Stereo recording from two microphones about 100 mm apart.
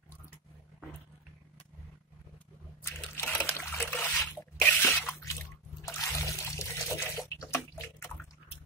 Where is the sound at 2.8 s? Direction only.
25° left (ahead or behind).